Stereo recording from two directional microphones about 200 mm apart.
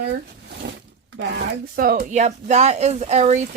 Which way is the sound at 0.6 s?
55° right (ahead or behind).